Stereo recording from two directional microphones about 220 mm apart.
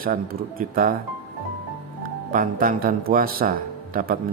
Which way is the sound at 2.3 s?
40° right (ahead or behind).